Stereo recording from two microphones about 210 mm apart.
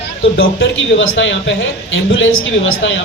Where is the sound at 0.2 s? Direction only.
65° left (ahead or behind).